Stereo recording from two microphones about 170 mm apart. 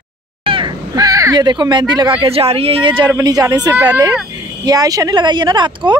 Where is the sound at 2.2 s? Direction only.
35° right (ahead or behind).